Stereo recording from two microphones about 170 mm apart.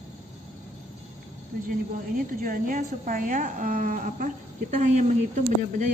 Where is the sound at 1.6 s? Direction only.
55° right (ahead or behind).